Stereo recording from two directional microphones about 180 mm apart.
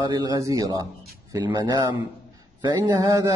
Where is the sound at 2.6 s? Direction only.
20° right (ahead or behind).